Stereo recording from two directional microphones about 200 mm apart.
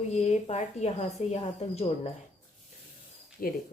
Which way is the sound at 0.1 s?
35° left (ahead or behind).